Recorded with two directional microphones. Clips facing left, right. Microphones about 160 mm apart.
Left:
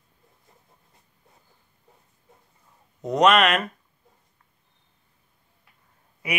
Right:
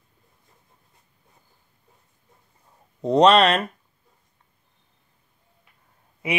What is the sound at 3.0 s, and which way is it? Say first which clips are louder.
Speech: right 3 dB; 30° right (ahead or behind).